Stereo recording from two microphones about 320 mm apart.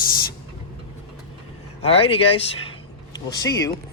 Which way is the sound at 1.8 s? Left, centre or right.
Centre.